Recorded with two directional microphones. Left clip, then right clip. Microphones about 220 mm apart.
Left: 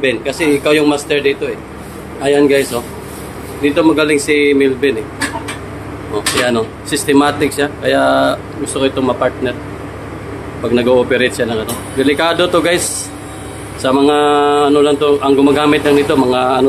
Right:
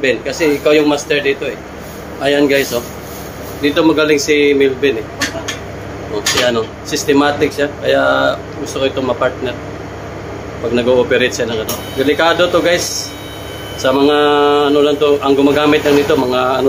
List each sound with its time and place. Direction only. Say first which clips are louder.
0.0 s speech: even; 15° left (ahead or behind)
6.1 s speech: even; 10° left (ahead or behind)
10.7 s speech: even; 15° left (ahead or behind)
13.8 s speech: even; 10° left (ahead or behind)